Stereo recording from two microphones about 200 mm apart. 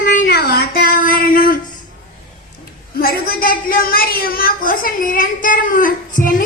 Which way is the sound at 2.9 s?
50° left (ahead or behind).